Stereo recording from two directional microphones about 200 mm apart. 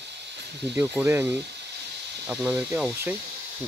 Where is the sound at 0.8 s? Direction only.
10° right (ahead or behind).